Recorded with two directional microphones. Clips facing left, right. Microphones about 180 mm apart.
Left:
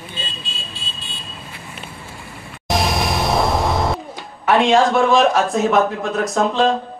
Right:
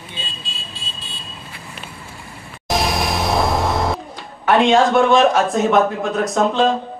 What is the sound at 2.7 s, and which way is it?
Music, centre (ahead or behind).